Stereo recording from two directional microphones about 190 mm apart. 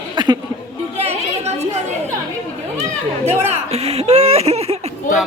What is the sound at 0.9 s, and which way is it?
Chatter, 35° right (ahead or behind).